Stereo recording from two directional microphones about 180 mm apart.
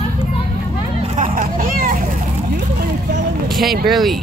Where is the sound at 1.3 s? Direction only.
50° right (ahead or behind).